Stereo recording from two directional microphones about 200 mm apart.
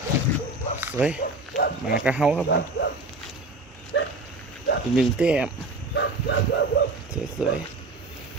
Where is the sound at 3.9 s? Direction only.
65° left (ahead or behind).